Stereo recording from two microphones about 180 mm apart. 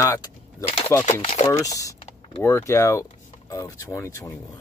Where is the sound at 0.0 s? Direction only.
15° left (ahead or behind).